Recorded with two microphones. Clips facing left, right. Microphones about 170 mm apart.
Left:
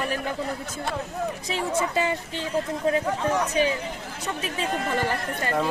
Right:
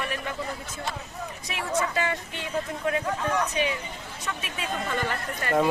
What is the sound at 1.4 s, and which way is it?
Speech, 30° left (ahead or behind).